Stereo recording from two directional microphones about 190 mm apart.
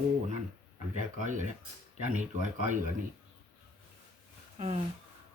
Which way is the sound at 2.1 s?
40° right (ahead or behind).